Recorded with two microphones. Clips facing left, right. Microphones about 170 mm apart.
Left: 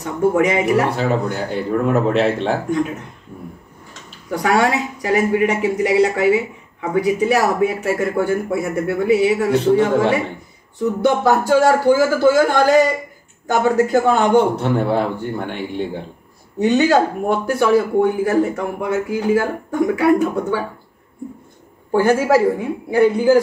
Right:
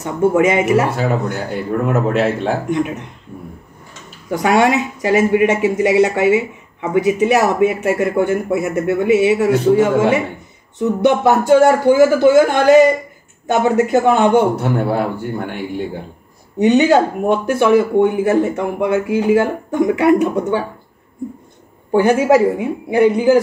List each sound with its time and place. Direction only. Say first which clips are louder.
0.0 s speech: right 2 dB; 25° right (ahead or behind)
0.9 s speech: right 1 dB; 5° right (ahead or behind)
4.3 s speech: right 3 dB; 25° right (ahead or behind)
14.6 s speech: even; 5° right (ahead or behind)
16.5 s speech: right 3 dB; 20° right (ahead or behind)
21.9 s a woman's voice: right 2 dB; 20° right (ahead or behind)